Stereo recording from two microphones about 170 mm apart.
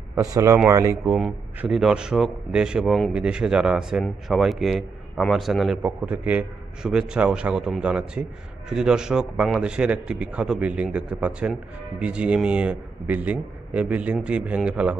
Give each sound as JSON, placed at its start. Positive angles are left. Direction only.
{"t": 0.1, "sound": "a man's voice", "side_deg": -20}
{"t": 1.1, "sound": "a man's voice", "side_deg": -5}